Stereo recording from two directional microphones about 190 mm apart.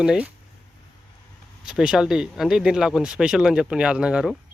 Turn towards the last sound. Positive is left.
turn(degrees=-5)  # may be behind; listen again after turning